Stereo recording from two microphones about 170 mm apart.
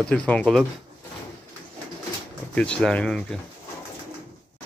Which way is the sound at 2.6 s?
5° left (ahead or behind).